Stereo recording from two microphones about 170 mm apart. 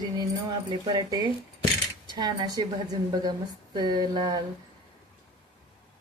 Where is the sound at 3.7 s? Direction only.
25° right (ahead or behind).